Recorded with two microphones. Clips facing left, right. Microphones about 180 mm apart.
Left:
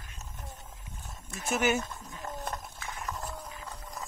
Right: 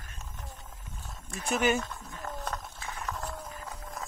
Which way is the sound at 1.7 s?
10° left (ahead or behind).